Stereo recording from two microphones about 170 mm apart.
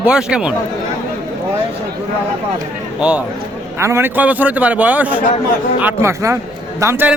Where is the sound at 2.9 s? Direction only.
5° right (ahead or behind).